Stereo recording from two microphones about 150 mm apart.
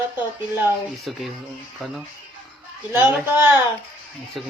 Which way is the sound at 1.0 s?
Centre (ahead or behind).